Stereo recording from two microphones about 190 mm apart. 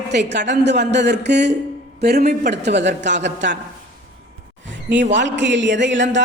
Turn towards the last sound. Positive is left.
turn(degrees=-70)  # may be behind; listen again after turning